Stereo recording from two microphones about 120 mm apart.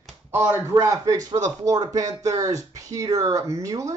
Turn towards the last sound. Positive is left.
turn(degrees=-25)  # may be behind; listen again after turning